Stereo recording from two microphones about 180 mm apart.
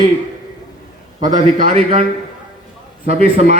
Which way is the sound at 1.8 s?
40° right (ahead or behind).